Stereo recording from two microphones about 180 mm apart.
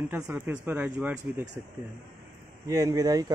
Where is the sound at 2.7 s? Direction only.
20° right (ahead or behind).